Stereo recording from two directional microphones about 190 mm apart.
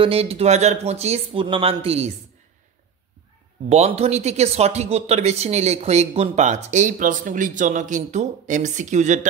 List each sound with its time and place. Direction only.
0.0 s speech: 30° right (ahead or behind)
3.6 s speech: 35° right (ahead or behind)